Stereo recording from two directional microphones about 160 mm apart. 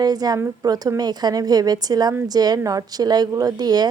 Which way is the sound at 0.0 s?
25° right (ahead or behind).